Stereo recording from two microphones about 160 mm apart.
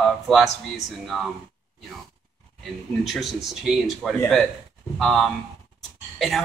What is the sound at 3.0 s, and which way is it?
Speech, centre (ahead or behind).